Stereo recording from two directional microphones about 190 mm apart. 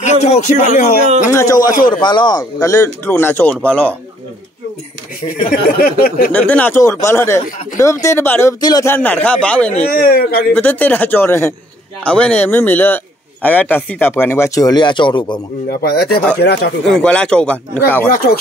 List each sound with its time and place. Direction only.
0.0 s speech: 35° left (ahead or behind)
1.3 s a man's voice: 15° left (ahead or behind)
1.6 s speech: 45° left (ahead or behind)
2.0 s a man's voice: 25° left (ahead or behind); by 3.9 s 5° left (ahead or behind)
5.5 s speech: 50° left (ahead or behind)
6.3 s a man's voice: 10° left (ahead or behind)
10.0 s speech: 50° left (ahead or behind)
10.5 s a man's voice: 10° left (ahead or behind); by 15.4 s 25° left (ahead or behind)
15.7 s speech: 55° left (ahead or behind)
16.9 s speech: 5° left (ahead or behind)
18.1 s speech: 50° left (ahead or behind)